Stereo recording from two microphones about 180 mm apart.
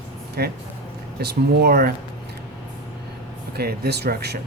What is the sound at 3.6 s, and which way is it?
Speech, 60° right (ahead or behind).